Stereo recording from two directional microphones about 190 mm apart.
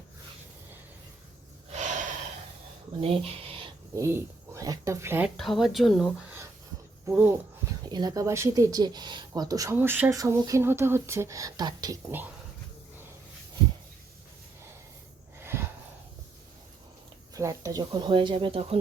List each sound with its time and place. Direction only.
1.7 s gasp: 40° right (ahead or behind)
3.0 s speech: 30° right (ahead or behind)
3.9 s speech: 15° right (ahead or behind)
5.4 s speech: centre (ahead or behind)
7.1 s speech: 10° right (ahead or behind)
7.9 s speech: 20° right (ahead or behind)
15.4 s a sound: 10° right (ahead or behind)
17.3 s speech: 15° right (ahead or behind)